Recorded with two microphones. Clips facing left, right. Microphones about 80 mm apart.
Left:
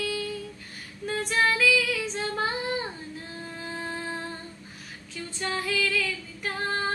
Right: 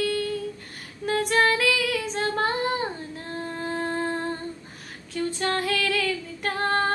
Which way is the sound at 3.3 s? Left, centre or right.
Right.